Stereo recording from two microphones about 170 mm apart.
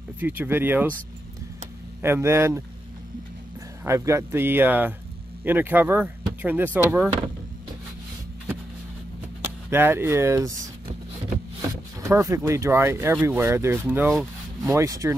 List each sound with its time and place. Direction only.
0.2 s speech: 10° right (ahead or behind)
2.0 s speech: 15° right (ahead or behind)
3.8 s speech: 15° right (ahead or behind)
9.7 s speech: 15° right (ahead or behind)
12.0 s speech: 15° right (ahead or behind)